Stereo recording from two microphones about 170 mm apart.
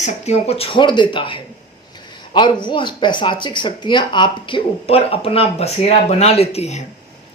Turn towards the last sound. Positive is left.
turn(degrees=40)  # may be behind; listen again after turning